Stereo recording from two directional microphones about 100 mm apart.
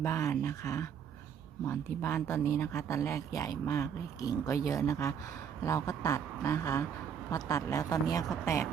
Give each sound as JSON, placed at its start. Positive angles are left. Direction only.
{"t": 0.0, "sound": "speech", "side_deg": 25}